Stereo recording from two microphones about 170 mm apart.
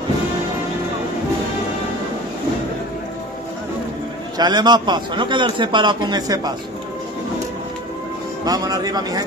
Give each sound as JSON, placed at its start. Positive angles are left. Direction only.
{"t": 4.4, "sound": "a man's voice", "side_deg": -25}
{"t": 8.5, "sound": "a man's voice", "side_deg": -20}